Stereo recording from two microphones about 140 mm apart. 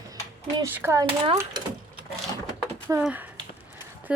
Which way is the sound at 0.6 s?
15° right (ahead or behind).